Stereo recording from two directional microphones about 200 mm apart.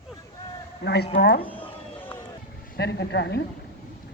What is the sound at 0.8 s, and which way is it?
Speech, 55° left (ahead or behind).